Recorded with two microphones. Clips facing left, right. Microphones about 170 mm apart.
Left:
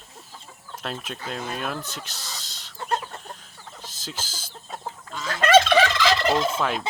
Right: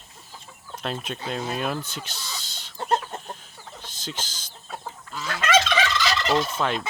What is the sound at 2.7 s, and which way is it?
Chicken, 30° right (ahead or behind).